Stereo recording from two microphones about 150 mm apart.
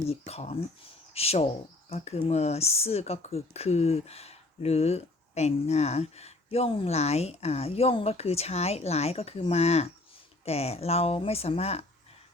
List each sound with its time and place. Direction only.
0.1 s speech: 45° left (ahead or behind)